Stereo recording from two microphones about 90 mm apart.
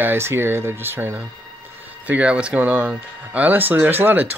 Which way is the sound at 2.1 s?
15° right (ahead or behind).